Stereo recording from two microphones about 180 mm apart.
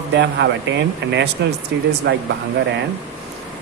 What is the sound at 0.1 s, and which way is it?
Speech, 75° right (ahead or behind).